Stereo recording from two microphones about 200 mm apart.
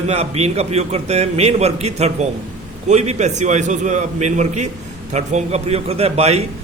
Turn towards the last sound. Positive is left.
turn(degrees=-30)  # may be behind; listen again after turning